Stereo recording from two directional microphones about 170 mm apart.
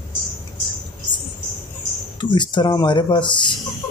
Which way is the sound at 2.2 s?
25° left (ahead or behind).